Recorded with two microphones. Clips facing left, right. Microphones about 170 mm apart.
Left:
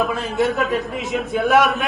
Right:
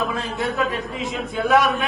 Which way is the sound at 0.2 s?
Centre (ahead or behind).